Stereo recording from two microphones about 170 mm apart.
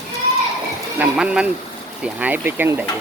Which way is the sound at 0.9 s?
5° right (ahead or behind).